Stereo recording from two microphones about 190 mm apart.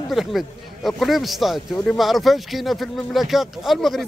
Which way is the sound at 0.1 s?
Centre (ahead or behind).